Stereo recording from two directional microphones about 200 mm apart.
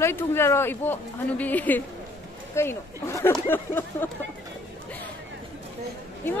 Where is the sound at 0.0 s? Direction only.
10° left (ahead or behind).